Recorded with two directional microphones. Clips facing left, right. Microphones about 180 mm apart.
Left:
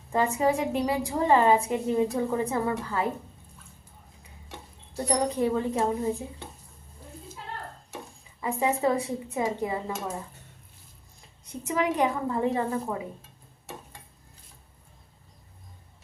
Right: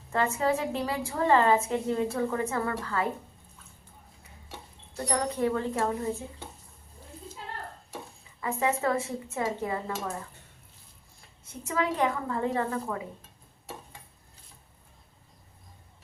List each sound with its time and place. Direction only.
0.1 s a woman's voice: 15° left (ahead or behind)
5.0 s a woman's voice: 15° left (ahead or behind)
8.4 s a woman's voice: 15° left (ahead or behind)
11.4 s a woman's voice: 15° left (ahead or behind)